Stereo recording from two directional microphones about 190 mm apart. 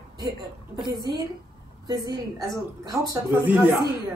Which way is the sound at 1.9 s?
20° right (ahead or behind).